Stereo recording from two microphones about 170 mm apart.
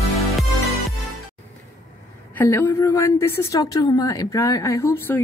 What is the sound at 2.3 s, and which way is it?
A woman's voice, 10° left (ahead or behind).